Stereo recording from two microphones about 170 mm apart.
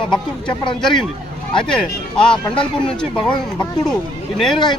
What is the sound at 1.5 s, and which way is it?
Speech, 5° left (ahead or behind).